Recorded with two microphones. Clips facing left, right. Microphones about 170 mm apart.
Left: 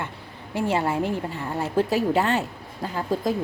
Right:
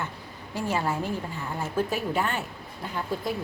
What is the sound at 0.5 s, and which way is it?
A woman's voice, 25° left (ahead or behind).